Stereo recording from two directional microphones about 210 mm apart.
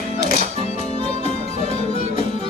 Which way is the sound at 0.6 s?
30° left (ahead or behind).